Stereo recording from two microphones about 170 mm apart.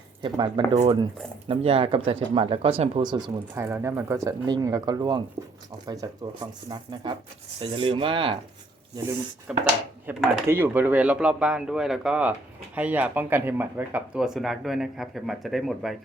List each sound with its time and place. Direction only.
0.2 s speech: 30° right (ahead or behind)
3.5 s speech: 15° right (ahead or behind); by 8.4 s 30° right (ahead or behind)
9.5 s speech: 5° right (ahead or behind)